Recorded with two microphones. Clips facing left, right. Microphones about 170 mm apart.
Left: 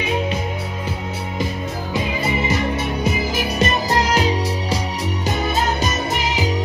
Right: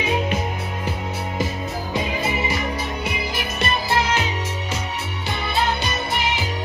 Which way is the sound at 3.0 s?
40° left (ahead or behind).